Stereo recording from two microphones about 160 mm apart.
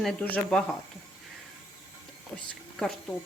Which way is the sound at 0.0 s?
5° left (ahead or behind).